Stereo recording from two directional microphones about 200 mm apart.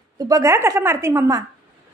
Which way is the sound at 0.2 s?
15° right (ahead or behind).